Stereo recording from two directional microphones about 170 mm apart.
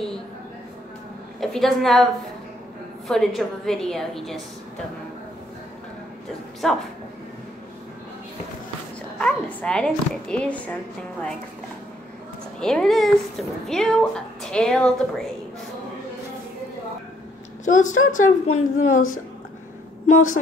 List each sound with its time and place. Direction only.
1.4 s a woman's voice: centre (ahead or behind)
3.1 s a woman's voice: centre (ahead or behind)
6.6 s a woman's voice: 5° left (ahead or behind)
9.2 s a woman's voice: 5° left (ahead or behind)
12.5 s a woman's voice: 5° left (ahead or behind)
17.6 s a woman's voice: 45° left (ahead or behind)
20.1 s a woman's voice: 50° left (ahead or behind)